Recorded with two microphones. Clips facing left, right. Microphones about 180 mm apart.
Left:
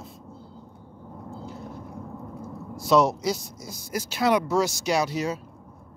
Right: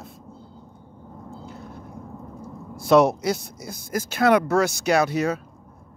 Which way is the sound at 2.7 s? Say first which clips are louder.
Right 4 dB; 60° right (ahead or behind).